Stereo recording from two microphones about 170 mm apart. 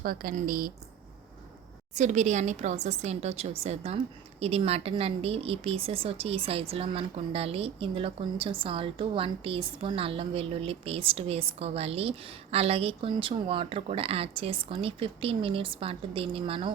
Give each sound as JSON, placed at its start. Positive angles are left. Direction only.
{"t": 0.0, "sound": "speech", "side_deg": -60}
{"t": 2.0, "sound": "speech", "side_deg": -45}